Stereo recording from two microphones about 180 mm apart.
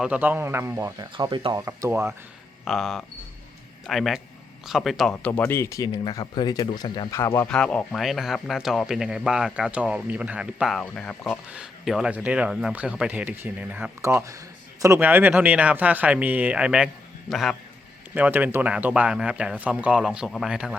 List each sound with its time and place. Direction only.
0.0 s speech: 10° right (ahead or behind)
1.1 s speech: 25° right (ahead or behind)
2.6 s speech: centre (ahead or behind)